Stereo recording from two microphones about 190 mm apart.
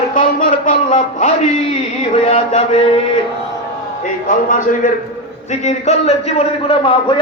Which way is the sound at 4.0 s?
45° left (ahead or behind).